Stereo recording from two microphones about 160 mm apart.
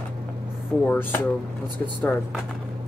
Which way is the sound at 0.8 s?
10° left (ahead or behind).